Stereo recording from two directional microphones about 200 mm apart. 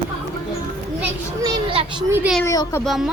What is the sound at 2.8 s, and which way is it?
Speech, centre (ahead or behind).